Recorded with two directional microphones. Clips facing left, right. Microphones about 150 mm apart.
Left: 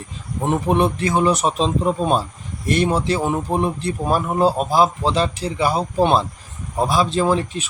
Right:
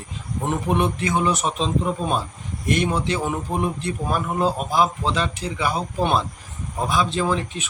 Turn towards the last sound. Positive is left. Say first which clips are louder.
# left 4 dB
turn(degrees=35)  # may be behind; listen again after turning